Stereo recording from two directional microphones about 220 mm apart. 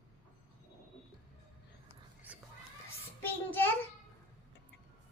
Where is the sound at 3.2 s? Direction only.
10° left (ahead or behind).